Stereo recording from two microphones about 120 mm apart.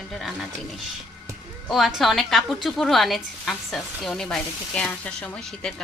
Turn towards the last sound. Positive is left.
turn(degrees=5)  # may be behind; listen again after turning